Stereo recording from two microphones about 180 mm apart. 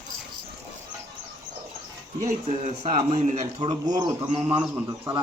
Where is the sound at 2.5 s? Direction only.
40° right (ahead or behind); by 4.1 s 25° right (ahead or behind).